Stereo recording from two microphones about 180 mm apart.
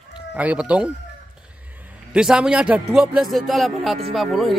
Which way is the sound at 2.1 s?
5° right (ahead or behind).